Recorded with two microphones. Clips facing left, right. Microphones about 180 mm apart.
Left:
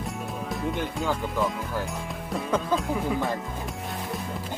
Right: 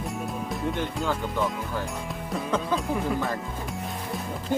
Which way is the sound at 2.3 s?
Centre (ahead or behind).